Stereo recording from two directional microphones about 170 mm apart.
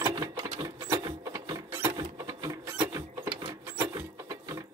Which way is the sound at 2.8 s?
25° right (ahead or behind).